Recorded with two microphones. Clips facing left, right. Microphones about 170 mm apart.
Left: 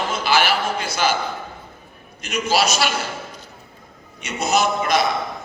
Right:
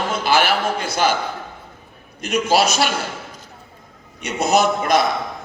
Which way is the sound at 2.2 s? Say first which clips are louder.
Right 3 dB; 55° right (ahead or behind).